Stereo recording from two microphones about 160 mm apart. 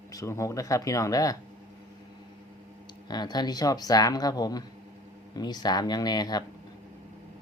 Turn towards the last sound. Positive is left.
turn(degrees=25)  # may be behind; listen again after turning